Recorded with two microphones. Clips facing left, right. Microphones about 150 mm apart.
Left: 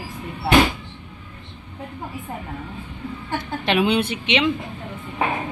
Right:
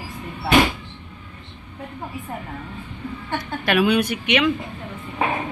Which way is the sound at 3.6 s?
25° left (ahead or behind).